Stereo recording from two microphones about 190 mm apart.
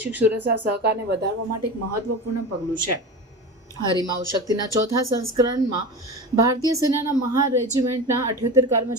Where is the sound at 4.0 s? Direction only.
20° right (ahead or behind).